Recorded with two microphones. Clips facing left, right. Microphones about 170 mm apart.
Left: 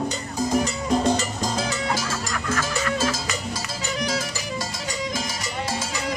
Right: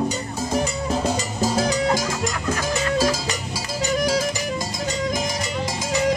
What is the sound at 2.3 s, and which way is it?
Chicken, 20° right (ahead or behind).